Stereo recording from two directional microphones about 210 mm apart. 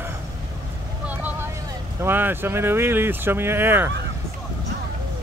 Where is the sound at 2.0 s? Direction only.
10° right (ahead or behind).